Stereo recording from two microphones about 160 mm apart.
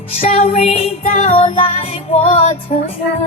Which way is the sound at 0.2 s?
40° left (ahead or behind).